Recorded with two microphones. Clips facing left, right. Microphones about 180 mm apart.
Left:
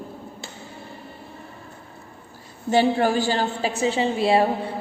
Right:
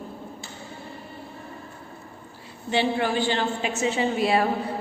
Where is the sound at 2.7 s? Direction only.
40° left (ahead or behind).